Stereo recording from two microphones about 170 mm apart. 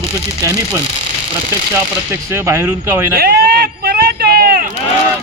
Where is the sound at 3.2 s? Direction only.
65° right (ahead or behind).